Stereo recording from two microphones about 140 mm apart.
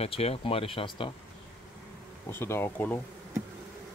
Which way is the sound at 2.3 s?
15° left (ahead or behind).